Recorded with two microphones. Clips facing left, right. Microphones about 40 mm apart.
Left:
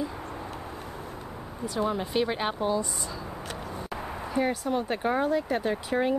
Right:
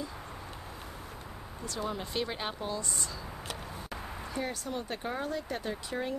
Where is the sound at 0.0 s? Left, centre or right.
Centre.